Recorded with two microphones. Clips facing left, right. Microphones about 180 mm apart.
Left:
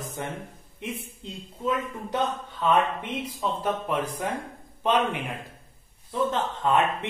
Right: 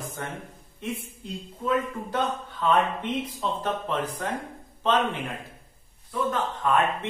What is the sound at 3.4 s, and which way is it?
Speech, 10° left (ahead or behind).